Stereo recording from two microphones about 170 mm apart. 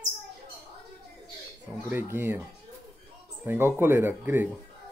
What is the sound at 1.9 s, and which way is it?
Speech, 15° right (ahead or behind).